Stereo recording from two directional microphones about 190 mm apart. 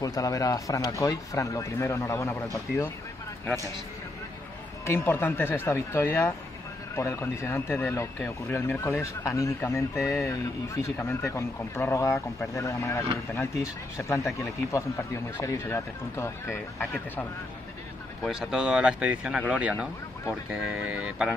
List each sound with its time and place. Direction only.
0.0 s speech: 20° left (ahead or behind)
4.8 s speech: 10° left (ahead or behind)
15.3 s speech: 15° left (ahead or behind)
18.2 s speech: centre (ahead or behind)